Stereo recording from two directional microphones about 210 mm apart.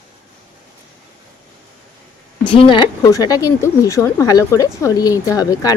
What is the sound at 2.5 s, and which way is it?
Speech, 20° left (ahead or behind).